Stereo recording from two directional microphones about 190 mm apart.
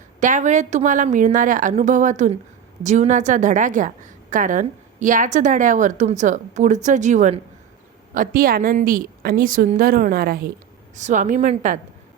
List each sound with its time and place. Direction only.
0.2 s a woman's voice: 40° right (ahead or behind)
10.9 s a woman's voice: 40° right (ahead or behind)